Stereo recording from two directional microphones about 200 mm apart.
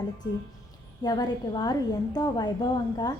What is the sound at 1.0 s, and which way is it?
A woman's voice, 20° left (ahead or behind).